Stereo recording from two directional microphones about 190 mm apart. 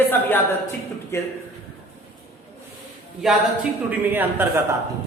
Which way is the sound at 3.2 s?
Centre (ahead or behind).